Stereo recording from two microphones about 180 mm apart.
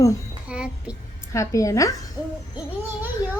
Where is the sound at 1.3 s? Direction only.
15° left (ahead or behind).